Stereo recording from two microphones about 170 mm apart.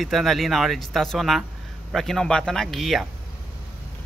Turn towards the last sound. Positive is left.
turn(degrees=0)  # may be behind; listen again after turning